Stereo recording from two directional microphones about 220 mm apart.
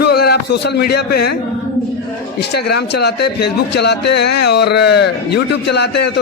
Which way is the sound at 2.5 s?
50° left (ahead or behind).